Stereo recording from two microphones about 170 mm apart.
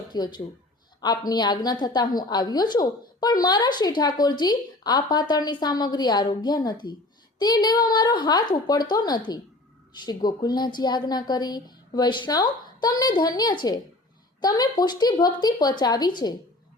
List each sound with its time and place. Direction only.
0.1 s a woman's voice: 25° left (ahead or behind)